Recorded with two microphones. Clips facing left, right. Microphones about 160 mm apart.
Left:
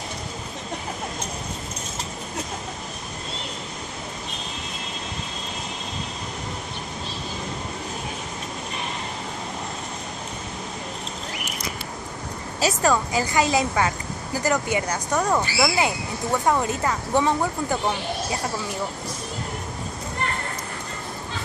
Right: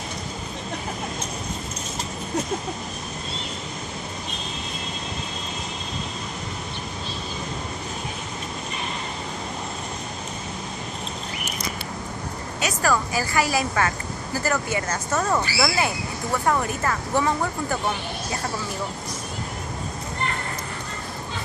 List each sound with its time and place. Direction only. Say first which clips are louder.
12.5 s a woman's voice: left 2 dB; 25° left (ahead or behind)